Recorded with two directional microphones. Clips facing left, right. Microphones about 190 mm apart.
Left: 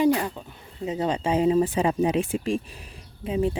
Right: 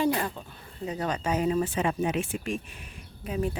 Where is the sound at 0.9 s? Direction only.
25° left (ahead or behind).